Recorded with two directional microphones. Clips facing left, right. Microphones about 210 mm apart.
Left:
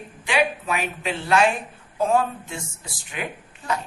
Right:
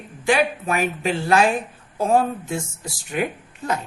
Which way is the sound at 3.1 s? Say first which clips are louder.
Right 7 dB; 45° right (ahead or behind).